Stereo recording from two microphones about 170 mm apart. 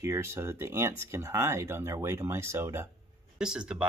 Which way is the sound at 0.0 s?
15° right (ahead or behind).